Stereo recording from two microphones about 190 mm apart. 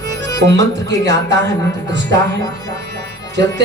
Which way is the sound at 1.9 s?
70° right (ahead or behind).